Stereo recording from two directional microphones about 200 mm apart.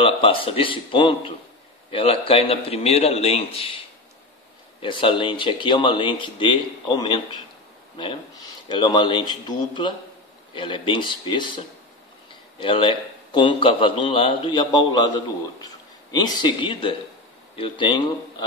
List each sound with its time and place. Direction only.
0.0 s a man's voice: 25° left (ahead or behind)
4.8 s a man's voice: 25° left (ahead or behind)